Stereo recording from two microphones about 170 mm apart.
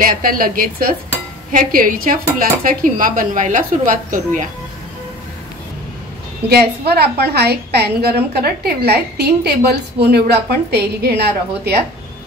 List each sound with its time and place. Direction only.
0.0 s a woman's voice: 55° right (ahead or behind)
6.5 s a woman's voice: 70° right (ahead or behind)